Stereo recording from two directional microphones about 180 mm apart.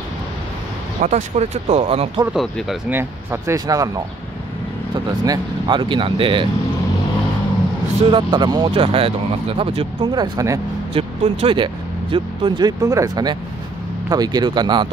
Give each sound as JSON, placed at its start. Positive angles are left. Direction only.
{"t": 1.0, "sound": "speech", "side_deg": -40}
{"t": 2.3, "sound": "speech", "side_deg": 0}
{"t": 2.9, "sound": "speech", "side_deg": -10}
{"t": 5.2, "sound": "speech", "side_deg": -25}
{"t": 8.1, "sound": "speech", "side_deg": -25}